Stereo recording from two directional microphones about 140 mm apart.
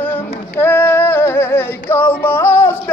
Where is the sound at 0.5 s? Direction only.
15° left (ahead or behind).